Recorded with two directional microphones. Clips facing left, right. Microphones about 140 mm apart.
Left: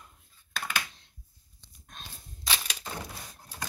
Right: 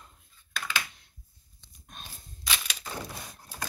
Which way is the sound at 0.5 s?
50° left (ahead or behind).